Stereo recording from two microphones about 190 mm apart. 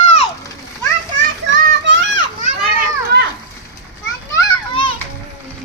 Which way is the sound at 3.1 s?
60° right (ahead or behind).